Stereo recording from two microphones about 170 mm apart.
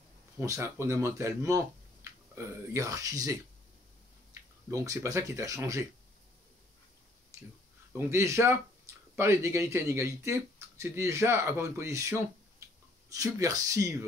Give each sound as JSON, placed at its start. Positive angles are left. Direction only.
{"t": 0.4, "sound": "speech", "side_deg": -15}
{"t": 7.3, "sound": "a sound", "side_deg": -15}
{"t": 8.1, "sound": "speech", "side_deg": -15}